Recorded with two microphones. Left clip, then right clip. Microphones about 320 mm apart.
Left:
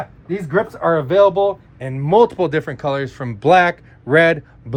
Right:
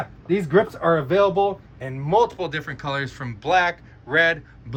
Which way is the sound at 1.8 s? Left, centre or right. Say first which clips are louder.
Left 6 dB; left.